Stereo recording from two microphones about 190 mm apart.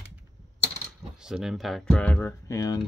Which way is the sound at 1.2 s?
Centre (ahead or behind).